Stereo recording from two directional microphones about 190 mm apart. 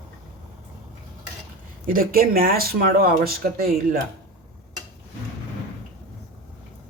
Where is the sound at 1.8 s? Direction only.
50° right (ahead or behind).